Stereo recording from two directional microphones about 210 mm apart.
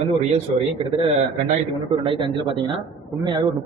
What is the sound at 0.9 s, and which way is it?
A man's voice, 25° right (ahead or behind).